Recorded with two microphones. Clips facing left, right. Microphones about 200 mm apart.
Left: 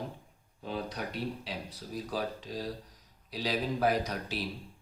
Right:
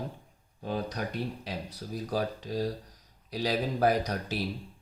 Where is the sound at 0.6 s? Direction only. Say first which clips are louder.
Right 3 dB; 45° right (ahead or behind).